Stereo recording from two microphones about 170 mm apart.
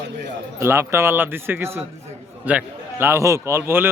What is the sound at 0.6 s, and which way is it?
Speech, 15° right (ahead or behind).